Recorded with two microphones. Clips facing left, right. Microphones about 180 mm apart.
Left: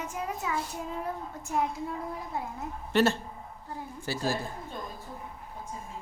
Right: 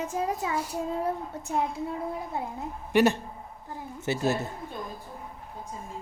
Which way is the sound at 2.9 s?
15° right (ahead or behind).